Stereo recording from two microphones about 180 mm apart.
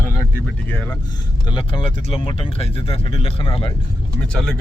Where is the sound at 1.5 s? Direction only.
30° left (ahead or behind).